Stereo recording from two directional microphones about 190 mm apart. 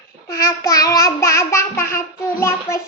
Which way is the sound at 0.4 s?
15° left (ahead or behind).